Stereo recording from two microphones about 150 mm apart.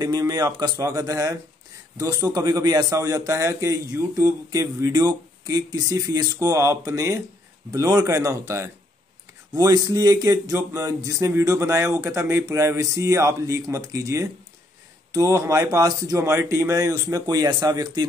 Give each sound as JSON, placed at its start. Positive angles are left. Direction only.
{"t": 0.0, "sound": "a man's voice", "side_deg": -25}